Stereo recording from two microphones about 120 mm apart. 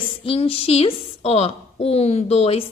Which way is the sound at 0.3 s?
50° left (ahead or behind).